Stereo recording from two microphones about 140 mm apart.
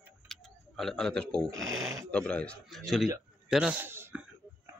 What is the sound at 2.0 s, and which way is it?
A man's voice, 5° left (ahead or behind).